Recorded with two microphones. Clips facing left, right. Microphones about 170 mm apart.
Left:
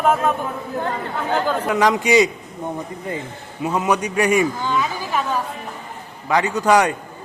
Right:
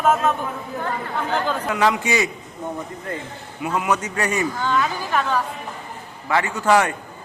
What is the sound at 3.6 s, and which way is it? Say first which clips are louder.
A man's voice: left 3 dB; 25° left (ahead or behind).